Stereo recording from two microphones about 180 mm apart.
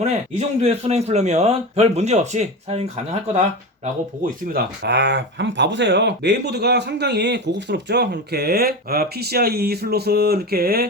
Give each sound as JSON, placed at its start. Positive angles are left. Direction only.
{"t": 0.0, "sound": "a man's voice", "side_deg": -35}
{"t": 4.5, "sound": "speech", "side_deg": -75}